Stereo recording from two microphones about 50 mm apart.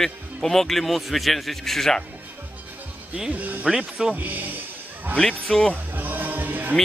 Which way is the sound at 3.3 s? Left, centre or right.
Right.